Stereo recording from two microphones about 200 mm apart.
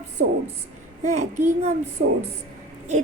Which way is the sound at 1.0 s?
35° right (ahead or behind).